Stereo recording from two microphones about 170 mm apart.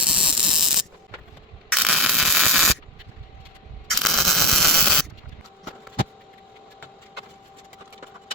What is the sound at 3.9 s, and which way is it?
Camera, centre (ahead or behind).